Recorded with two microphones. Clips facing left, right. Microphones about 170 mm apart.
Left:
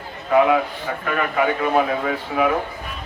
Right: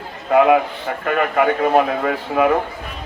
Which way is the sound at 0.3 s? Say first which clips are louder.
Right 3 dB; 70° right (ahead or behind).